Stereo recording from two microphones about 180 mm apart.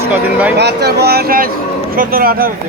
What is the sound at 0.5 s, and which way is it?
Speech, 70° right (ahead or behind).